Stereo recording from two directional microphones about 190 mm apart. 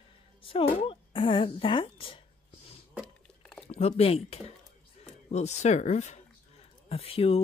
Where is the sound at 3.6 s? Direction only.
35° left (ahead or behind).